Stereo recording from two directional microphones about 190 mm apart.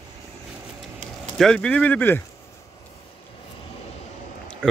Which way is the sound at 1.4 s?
5° left (ahead or behind).